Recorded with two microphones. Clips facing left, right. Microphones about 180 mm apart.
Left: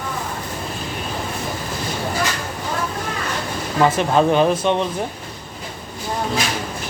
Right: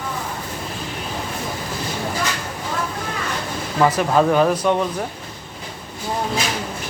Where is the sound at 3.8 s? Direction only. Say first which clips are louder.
Even; 25° left (ahead or behind).